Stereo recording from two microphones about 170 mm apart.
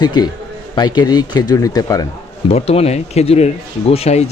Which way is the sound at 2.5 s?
35° left (ahead or behind).